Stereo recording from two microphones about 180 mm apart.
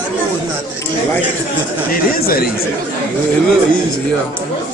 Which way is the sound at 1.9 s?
55° left (ahead or behind).